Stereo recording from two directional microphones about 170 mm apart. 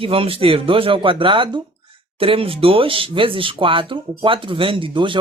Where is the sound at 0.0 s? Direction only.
35° right (ahead or behind).